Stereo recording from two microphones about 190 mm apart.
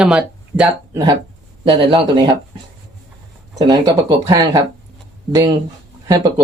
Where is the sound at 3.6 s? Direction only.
20° right (ahead or behind).